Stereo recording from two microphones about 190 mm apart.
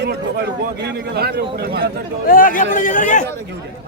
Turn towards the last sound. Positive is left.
turn(degrees=45)  # may be behind; listen again after turning